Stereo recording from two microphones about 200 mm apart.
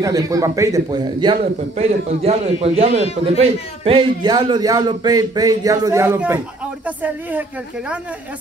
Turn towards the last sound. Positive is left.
turn(degrees=-10)  # may be behind; listen again after turning